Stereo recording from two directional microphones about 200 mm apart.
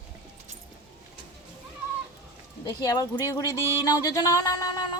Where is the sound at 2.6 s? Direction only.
20° left (ahead or behind).